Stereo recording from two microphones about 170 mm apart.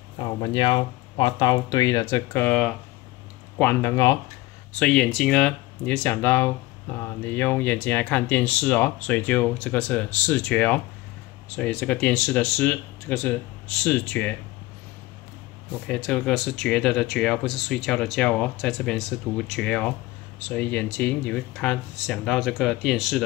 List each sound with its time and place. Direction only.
0.2 s speech: 25° left (ahead or behind)
2.4 s speech: 5° left (ahead or behind); by 4.2 s 20° left (ahead or behind)
4.7 s speech: 5° left (ahead or behind)
15.9 s speech: 5° left (ahead or behind)